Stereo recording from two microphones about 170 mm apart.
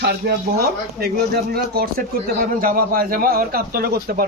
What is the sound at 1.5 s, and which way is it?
A man's voice, 65° right (ahead or behind).